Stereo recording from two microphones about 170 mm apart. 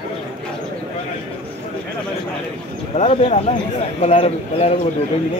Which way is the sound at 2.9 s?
40° left (ahead or behind).